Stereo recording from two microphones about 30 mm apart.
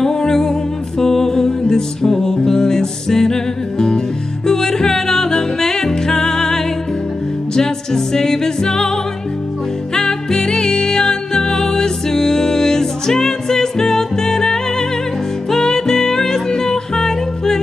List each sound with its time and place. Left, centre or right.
0.0 s music: centre